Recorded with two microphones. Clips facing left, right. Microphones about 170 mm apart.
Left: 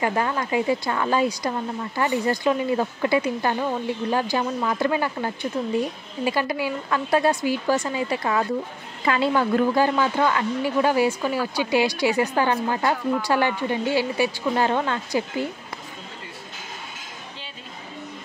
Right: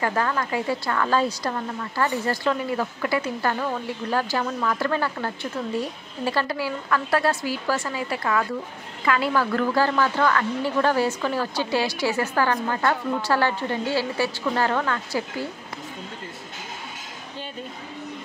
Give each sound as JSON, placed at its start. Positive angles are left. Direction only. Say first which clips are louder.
{"t": 0.0, "sound": "speech", "louder": "left 1 dB", "side_deg": 15}